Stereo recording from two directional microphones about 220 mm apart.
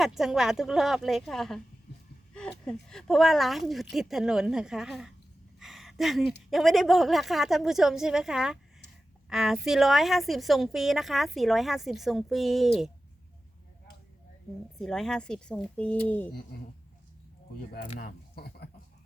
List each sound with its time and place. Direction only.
0.0 s a woman's voice: centre (ahead or behind)
5.5 s a sound: centre (ahead or behind)
6.5 s a woman's voice: centre (ahead or behind)
14.8 s a woman's voice: centre (ahead or behind)
18.0 s speech: 45° left (ahead or behind)